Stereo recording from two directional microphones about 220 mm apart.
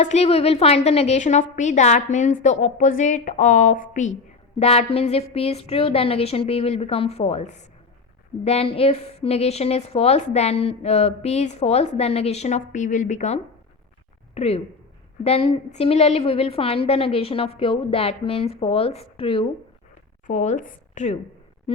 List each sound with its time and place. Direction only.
0.0 s a woman's voice: 30° left (ahead or behind)